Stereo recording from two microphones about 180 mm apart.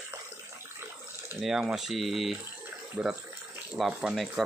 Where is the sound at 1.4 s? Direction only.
5° right (ahead or behind).